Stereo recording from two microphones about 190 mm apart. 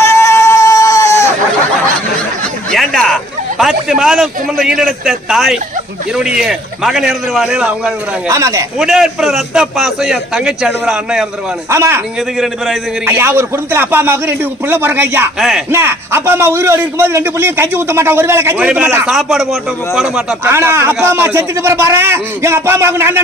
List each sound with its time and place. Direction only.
0.0 s a sound: 15° left (ahead or behind)
2.7 s a man's voice: centre (ahead or behind)
8.3 s a man's voice: 15° right (ahead or behind)
8.7 s a man's voice: 5° right (ahead or behind)
11.7 s a man's voice: 15° right (ahead or behind)
13.0 s a man's voice: 15° right (ahead or behind)
15.7 s a man's voice: 15° right (ahead or behind)
20.5 s a man's voice: 15° right (ahead or behind)